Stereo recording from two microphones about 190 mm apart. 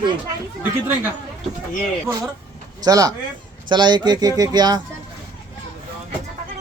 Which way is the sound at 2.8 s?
20° right (ahead or behind).